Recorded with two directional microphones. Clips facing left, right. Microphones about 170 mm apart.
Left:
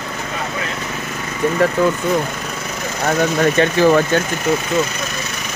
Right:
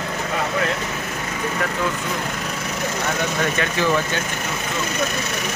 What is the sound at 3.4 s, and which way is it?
Speech, 35° left (ahead or behind).